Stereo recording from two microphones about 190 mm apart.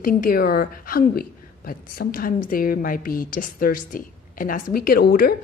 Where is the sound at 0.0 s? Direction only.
50° left (ahead or behind).